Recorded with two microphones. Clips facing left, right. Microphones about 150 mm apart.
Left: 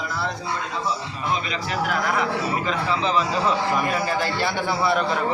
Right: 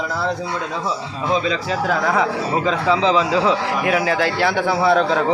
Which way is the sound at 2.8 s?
90° right.